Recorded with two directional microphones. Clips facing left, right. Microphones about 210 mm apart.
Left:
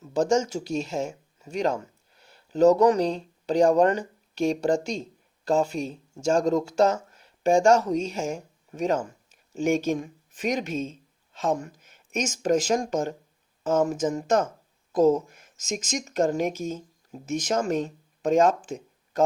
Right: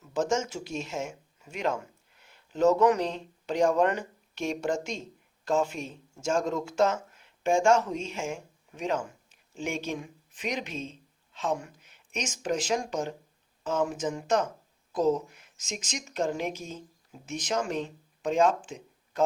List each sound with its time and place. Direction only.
0.0 s speech: 35° left (ahead or behind)